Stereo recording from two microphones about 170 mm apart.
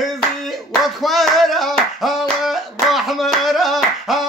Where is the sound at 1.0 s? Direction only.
Centre (ahead or behind).